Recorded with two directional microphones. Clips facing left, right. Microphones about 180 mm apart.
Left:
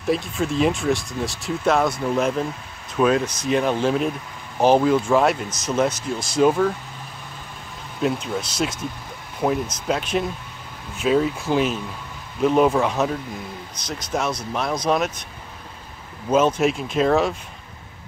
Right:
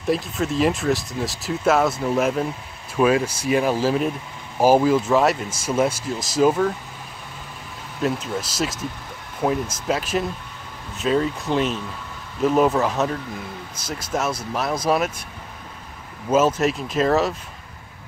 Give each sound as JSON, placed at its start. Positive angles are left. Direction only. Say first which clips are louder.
{"t": 0.0, "sound": "speech", "louder": "even", "side_deg": 0}
{"t": 8.0, "sound": "speech", "louder": "left 1 dB", "side_deg": 0}
{"t": 16.3, "sound": "speech", "louder": "even", "side_deg": -5}